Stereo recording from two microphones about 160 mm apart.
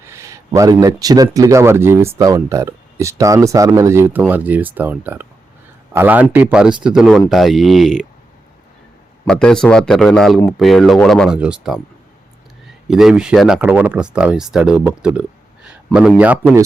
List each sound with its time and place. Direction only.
0.0 s speech: 15° right (ahead or behind); by 8.0 s centre (ahead or behind)
9.2 s speech: 5° left (ahead or behind)
12.9 s speech: centre (ahead or behind)